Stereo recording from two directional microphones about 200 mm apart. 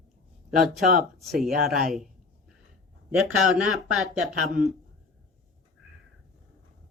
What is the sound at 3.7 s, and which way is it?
Speech, centre (ahead or behind).